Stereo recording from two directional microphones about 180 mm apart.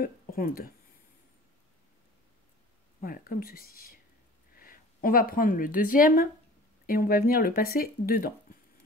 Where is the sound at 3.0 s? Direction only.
50° left (ahead or behind).